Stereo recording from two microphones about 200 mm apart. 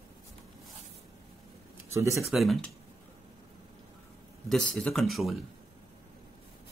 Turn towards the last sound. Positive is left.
turn(degrees=0)  # may be behind; listen again after turning